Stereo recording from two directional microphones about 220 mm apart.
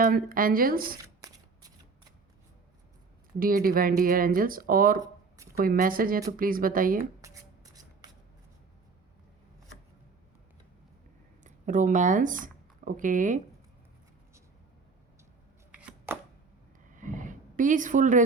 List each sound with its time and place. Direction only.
0.0 s speech: 40° right (ahead or behind)
3.4 s speech: 40° right (ahead or behind)
7.2 s shuffle: 15° right (ahead or behind)
11.4 s speech: 35° right (ahead or behind)
15.7 s chopping: 5° right (ahead or behind)
16.9 s a sound: 35° right (ahead or behind)